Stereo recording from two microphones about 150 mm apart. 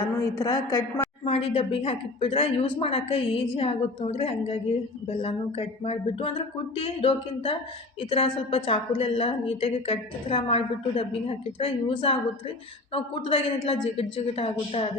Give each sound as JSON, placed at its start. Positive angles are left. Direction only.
{"t": 0.2, "sound": "a woman's voice", "side_deg": 20}
{"t": 1.2, "sound": "speech", "side_deg": 40}